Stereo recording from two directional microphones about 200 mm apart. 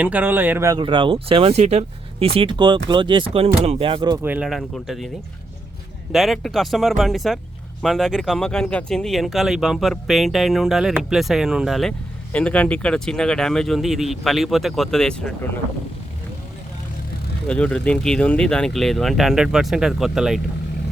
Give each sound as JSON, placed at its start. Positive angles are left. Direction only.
{"t": 0.0, "sound": "speech", "side_deg": -10}
{"t": 17.5, "sound": "speech", "side_deg": 5}